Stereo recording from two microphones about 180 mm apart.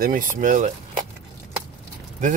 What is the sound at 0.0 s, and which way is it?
Speech, 50° right (ahead or behind).